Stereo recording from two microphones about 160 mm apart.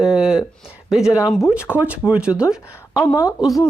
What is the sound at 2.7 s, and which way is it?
Speech, 15° left (ahead or behind).